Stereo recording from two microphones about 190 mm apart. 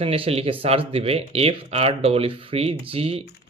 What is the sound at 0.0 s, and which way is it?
Speech, 30° right (ahead or behind).